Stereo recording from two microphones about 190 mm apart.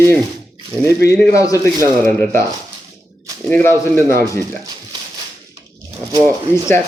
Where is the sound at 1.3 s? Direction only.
15° left (ahead or behind).